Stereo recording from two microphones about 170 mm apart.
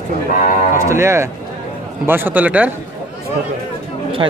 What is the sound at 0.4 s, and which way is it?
Livestock, 50° left (ahead or behind).